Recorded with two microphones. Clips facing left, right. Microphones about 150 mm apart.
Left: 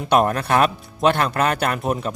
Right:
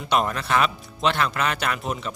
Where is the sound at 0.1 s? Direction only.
50° left (ahead or behind).